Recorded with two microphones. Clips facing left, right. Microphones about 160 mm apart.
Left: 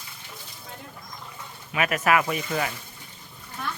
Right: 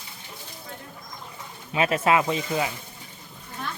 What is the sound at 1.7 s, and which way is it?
Speech, 25° right (ahead or behind).